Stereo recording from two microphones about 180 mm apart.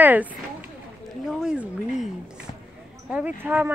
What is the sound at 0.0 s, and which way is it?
Speech, 10° right (ahead or behind).